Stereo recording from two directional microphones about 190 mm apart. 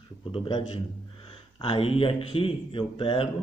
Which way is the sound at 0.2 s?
25° left (ahead or behind).